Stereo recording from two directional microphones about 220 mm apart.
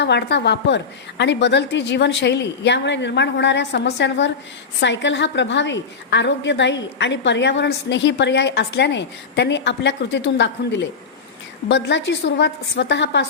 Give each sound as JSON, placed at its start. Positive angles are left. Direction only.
{"t": 0.0, "sound": "a woman's voice", "side_deg": 50}